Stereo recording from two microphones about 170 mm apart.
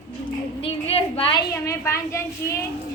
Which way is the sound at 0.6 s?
35° left (ahead or behind).